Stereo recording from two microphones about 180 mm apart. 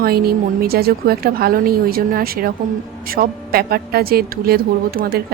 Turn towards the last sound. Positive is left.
turn(degrees=-55)  # may be behind; listen again after turning